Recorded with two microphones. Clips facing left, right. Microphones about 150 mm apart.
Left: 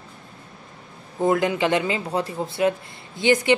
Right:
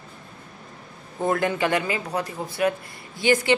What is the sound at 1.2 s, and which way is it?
Speech, 15° left (ahead or behind).